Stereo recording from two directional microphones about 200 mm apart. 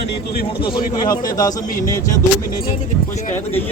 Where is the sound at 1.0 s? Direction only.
20° left (ahead or behind).